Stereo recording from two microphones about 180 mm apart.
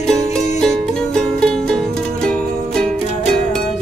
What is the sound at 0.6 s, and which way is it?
Music, 5° left (ahead or behind).